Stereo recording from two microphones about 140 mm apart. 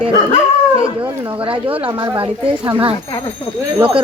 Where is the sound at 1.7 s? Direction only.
40° right (ahead or behind).